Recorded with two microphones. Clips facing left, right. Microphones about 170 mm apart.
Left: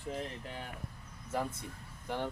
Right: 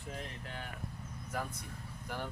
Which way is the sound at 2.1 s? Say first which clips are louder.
Left 5 dB; 25° left (ahead or behind).